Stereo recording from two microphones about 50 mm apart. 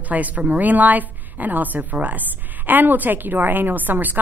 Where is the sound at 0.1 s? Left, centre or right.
Right.